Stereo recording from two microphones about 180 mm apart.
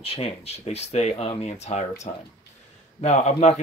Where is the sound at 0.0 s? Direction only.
30° left (ahead or behind).